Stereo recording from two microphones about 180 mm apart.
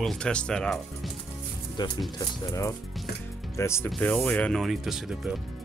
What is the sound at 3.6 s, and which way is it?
Speech, 15° left (ahead or behind).